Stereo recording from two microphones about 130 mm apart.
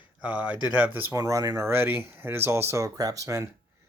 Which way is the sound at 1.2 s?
25° right (ahead or behind).